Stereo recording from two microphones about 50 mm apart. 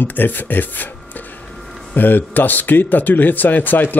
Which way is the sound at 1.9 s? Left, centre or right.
Left.